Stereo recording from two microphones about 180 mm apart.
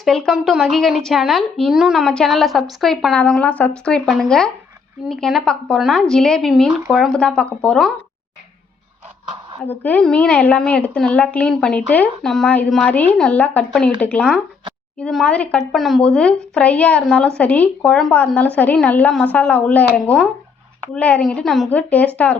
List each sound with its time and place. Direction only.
0.0 s a woman's voice: centre (ahead or behind)
9.6 s a woman's voice: 10° left (ahead or behind)
20.9 s speech: 5° left (ahead or behind)